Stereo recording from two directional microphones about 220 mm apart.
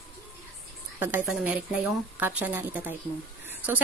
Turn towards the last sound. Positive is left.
turn(degrees=-10)  # may be behind; listen again after turning